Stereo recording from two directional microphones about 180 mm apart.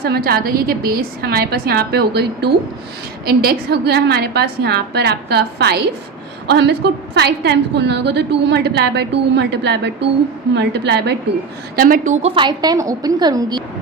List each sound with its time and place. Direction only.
0.0 s a woman's voice: 60° right (ahead or behind)
11.8 s a woman's voice: 50° right (ahead or behind)
12.2 s a woman's voice: 25° right (ahead or behind)